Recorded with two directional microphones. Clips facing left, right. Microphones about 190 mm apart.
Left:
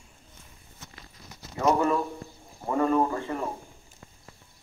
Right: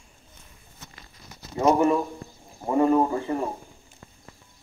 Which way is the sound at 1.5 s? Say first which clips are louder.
Right 4 dB; 20° right (ahead or behind).